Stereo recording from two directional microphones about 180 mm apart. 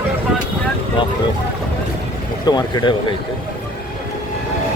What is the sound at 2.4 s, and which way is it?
Speech, 25° left (ahead or behind).